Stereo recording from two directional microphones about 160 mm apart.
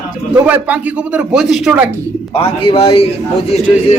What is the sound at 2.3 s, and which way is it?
A man's voice, 35° left (ahead or behind).